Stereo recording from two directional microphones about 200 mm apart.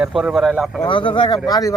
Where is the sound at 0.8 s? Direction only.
25° left (ahead or behind).